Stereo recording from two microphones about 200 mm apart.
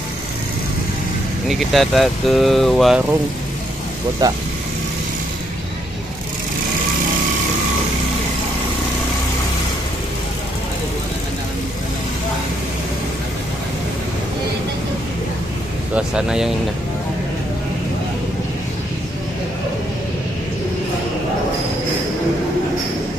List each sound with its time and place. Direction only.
1.5 s speech: centre (ahead or behind)
4.2 s speech: 20° right (ahead or behind)
15.9 s speech: 5° right (ahead or behind)